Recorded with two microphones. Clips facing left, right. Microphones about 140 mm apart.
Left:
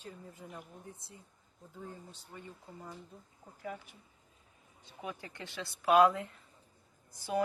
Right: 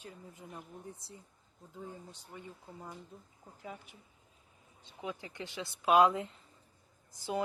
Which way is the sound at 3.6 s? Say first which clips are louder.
Left 4 dB; 20° right (ahead or behind).